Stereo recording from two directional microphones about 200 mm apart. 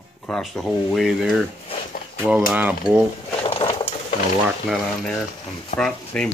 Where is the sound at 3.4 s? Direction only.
30° left (ahead or behind).